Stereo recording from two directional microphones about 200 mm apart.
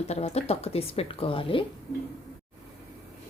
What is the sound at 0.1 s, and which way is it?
Speech, 30° left (ahead or behind).